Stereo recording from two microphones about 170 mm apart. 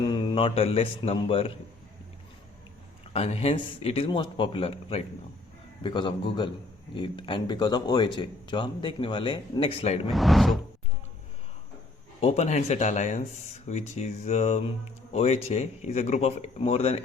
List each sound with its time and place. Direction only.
0.0 s speech: 25° left (ahead or behind)
3.1 s speech: 35° left (ahead or behind)
10.1 s speech: centre (ahead or behind)
12.2 s speech: 40° left (ahead or behind)